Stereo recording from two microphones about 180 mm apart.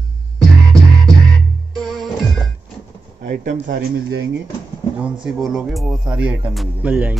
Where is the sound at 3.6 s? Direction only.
60° right (ahead or behind); by 4.3 s 75° right (ahead or behind).